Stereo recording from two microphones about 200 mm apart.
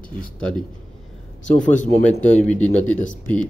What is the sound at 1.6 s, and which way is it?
Speech, 40° left (ahead or behind).